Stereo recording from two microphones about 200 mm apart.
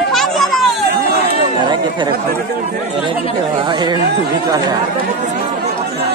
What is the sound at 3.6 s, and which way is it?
Speech, 25° right (ahead or behind).